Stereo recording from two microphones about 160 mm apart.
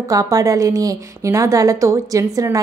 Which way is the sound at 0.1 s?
20° right (ahead or behind).